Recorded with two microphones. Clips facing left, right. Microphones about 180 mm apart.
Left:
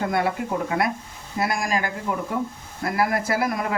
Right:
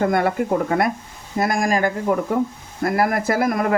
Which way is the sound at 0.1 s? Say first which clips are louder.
Right 5 dB; 50° right (ahead or behind).